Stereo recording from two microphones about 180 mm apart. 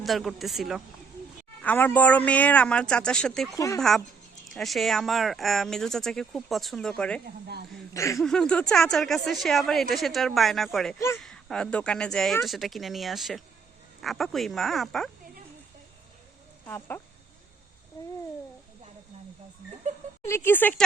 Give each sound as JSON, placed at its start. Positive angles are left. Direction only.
{"t": 0.0, "sound": "speech", "side_deg": 0}
{"t": 1.6, "sound": "a man's voice", "side_deg": 10}
{"t": 3.5, "sound": "a man's voice", "side_deg": 15}
{"t": 3.8, "sound": "speech", "side_deg": 0}
{"t": 7.3, "sound": "speech", "side_deg": -65}
{"t": 7.9, "sound": "a man's voice", "side_deg": 15}
{"t": 8.2, "sound": "speech", "side_deg": 5}
{"t": 16.6, "sound": "a man's voice", "side_deg": 10}
{"t": 20.2, "sound": "a man's voice", "side_deg": 15}